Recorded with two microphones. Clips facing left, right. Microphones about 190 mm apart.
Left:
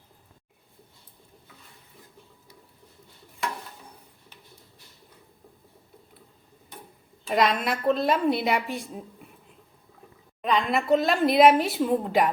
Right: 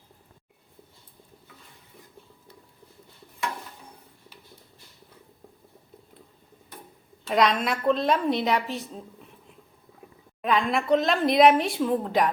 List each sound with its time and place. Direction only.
7.3 s a woman's voice: centre (ahead or behind)
10.4 s a woman's voice: centre (ahead or behind)